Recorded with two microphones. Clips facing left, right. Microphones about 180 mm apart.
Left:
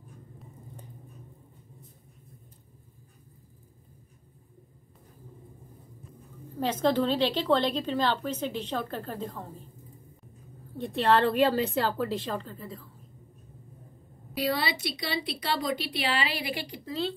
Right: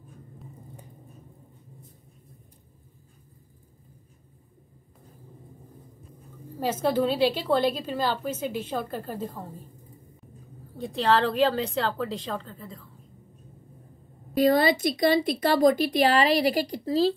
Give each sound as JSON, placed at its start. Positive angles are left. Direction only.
{"t": 6.6, "sound": "a woman's voice", "side_deg": -10}
{"t": 10.8, "sound": "a woman's voice", "side_deg": 0}
{"t": 14.3, "sound": "speech", "side_deg": -45}